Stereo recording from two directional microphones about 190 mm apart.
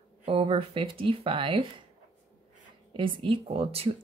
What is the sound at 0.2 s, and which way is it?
Speech, 30° right (ahead or behind).